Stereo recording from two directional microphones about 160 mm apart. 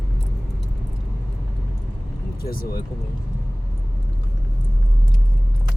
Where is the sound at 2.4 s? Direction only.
65° left (ahead or behind).